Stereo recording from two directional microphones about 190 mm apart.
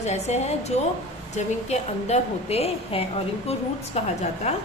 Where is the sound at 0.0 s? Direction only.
35° left (ahead or behind).